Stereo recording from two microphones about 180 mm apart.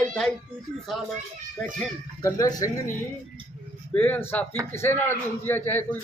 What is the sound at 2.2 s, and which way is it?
Speech, 20° left (ahead or behind).